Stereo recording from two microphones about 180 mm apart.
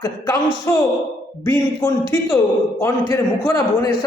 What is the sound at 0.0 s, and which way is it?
A man's voice, 15° left (ahead or behind).